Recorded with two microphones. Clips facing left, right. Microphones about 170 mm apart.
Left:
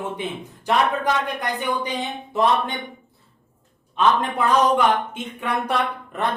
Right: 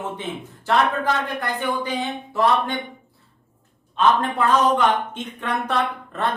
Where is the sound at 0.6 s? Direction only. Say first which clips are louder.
Even; 15° left (ahead or behind).